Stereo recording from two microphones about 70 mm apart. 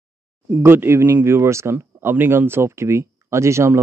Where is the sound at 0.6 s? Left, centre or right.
Right.